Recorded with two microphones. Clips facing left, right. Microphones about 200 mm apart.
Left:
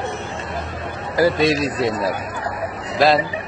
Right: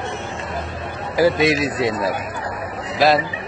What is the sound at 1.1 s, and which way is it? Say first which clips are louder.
Speech: even; 15° right (ahead or behind).